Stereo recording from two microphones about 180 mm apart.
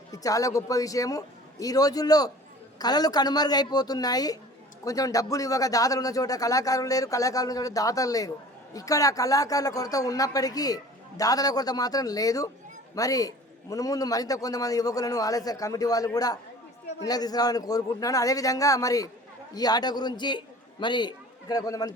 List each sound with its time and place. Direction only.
0.1 s a man's voice: 20° left (ahead or behind)